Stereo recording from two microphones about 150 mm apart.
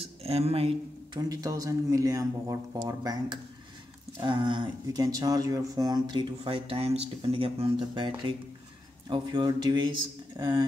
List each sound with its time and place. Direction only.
0.0 s speech: 40° right (ahead or behind)
1.3 s speech: 25° right (ahead or behind)